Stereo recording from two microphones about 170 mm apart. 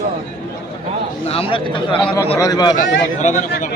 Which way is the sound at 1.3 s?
30° left (ahead or behind).